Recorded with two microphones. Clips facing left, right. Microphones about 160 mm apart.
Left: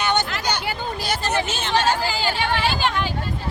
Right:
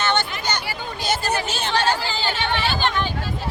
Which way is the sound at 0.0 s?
15° left (ahead or behind).